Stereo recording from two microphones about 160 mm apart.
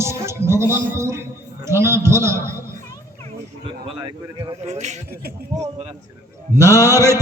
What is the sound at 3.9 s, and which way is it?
Speech, 25° right (ahead or behind).